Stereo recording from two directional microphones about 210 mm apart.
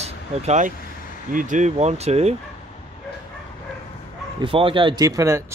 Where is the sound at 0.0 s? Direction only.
30° right (ahead or behind).